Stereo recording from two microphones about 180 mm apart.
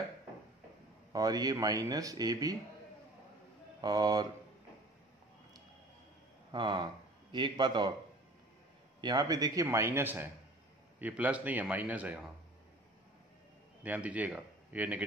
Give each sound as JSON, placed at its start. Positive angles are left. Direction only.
{"t": 1.1, "sound": "speech", "side_deg": -20}
{"t": 3.8, "sound": "speech", "side_deg": -20}
{"t": 6.5, "sound": "speech", "side_deg": -25}
{"t": 9.0, "sound": "a man's voice", "side_deg": -20}
{"t": 13.8, "sound": "speech", "side_deg": -10}